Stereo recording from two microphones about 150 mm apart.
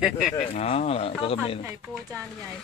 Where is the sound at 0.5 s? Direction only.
45° left (ahead or behind).